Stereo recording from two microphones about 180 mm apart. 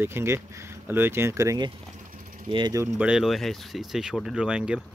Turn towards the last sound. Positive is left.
turn(degrees=-5)  # may be behind; listen again after turning